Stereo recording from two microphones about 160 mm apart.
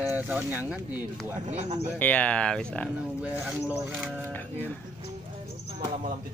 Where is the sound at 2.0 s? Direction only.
10° left (ahead or behind).